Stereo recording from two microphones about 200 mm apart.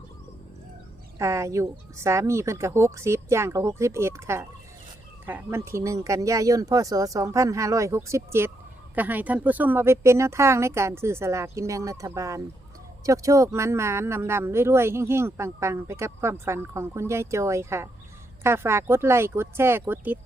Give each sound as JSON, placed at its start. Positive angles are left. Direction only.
{"t": 1.2, "sound": "speech", "side_deg": -15}